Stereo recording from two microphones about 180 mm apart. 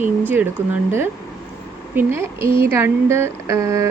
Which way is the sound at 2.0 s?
15° right (ahead or behind).